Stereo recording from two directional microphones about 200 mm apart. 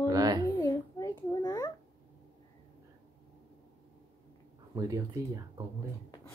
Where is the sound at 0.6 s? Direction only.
15° left (ahead or behind).